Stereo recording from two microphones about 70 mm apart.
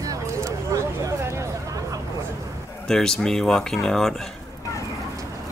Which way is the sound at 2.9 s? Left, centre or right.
Centre.